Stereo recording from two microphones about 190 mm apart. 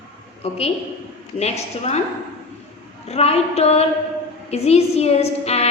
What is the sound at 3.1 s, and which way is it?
A woman's voice, 35° left (ahead or behind).